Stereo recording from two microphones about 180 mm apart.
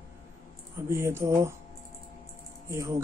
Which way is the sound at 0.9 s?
15° right (ahead or behind).